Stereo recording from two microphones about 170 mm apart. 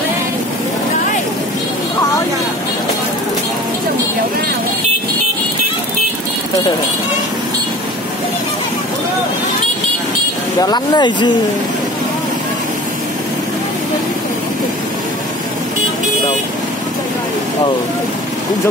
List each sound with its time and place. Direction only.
10.6 s speech: 25° left (ahead or behind)